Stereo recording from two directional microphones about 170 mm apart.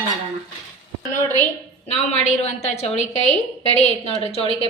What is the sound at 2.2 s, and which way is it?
A woman's voice, 40° left (ahead or behind).